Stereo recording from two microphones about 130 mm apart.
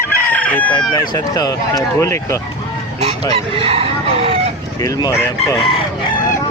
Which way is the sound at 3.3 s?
45° right (ahead or behind).